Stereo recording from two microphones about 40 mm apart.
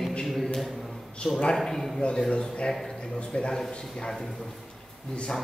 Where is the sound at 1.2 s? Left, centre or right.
Left.